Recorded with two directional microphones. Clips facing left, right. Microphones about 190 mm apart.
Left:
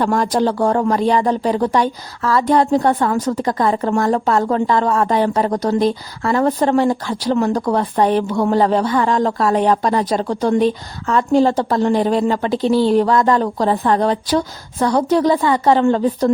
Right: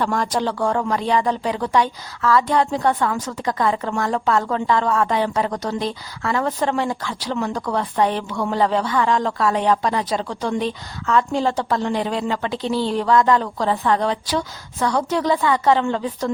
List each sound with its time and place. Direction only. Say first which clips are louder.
0.0 s speech: left 5 dB; 40° left (ahead or behind)